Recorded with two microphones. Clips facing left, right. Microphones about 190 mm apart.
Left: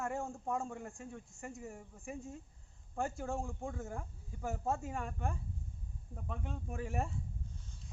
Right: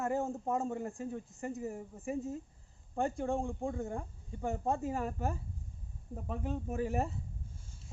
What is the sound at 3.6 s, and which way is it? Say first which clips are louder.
Speech: right 6 dB; 15° right (ahead or behind).